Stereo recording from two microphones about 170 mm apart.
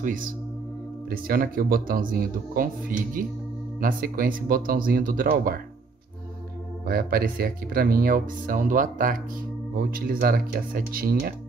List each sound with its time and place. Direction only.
0.0 s speech: 50° right (ahead or behind)
6.9 s speech: 60° right (ahead or behind)